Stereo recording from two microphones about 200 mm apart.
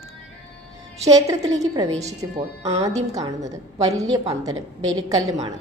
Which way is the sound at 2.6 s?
30° right (ahead or behind).